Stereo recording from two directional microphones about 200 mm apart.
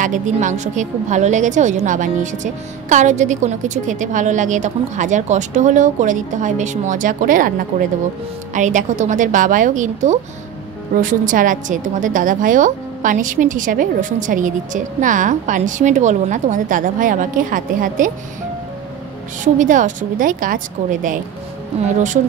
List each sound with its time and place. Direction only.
0.0 s a woman's voice: 40° right (ahead or behind)
8.5 s a woman's voice: 40° right (ahead or behind)
19.4 s a woman's voice: 40° right (ahead or behind)